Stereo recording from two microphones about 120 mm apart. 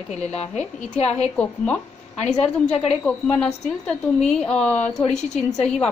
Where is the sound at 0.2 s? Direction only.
65° left (ahead or behind).